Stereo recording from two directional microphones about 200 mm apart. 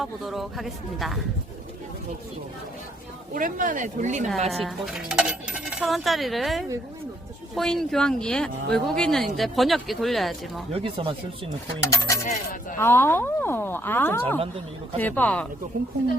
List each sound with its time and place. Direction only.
0.0 s speech: centre (ahead or behind)
3.3 s speech: 40° right (ahead or behind)
4.5 s speech: centre (ahead or behind)
10.7 s speech: 30° right (ahead or behind)
11.8 s speech: 15° left (ahead or behind)
15.7 s speech: 45° right (ahead or behind)